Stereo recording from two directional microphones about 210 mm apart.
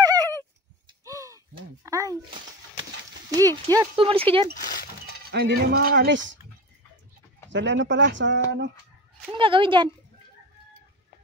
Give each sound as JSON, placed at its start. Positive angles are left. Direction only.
{"t": 0.0, "sound": "a sound", "side_deg": -20}
{"t": 3.7, "sound": "speech", "side_deg": -20}
{"t": 4.6, "sound": "a sound", "side_deg": 40}
{"t": 5.0, "sound": "speech", "side_deg": -50}
{"t": 7.4, "sound": "speech", "side_deg": -60}
{"t": 9.3, "sound": "speech", "side_deg": -25}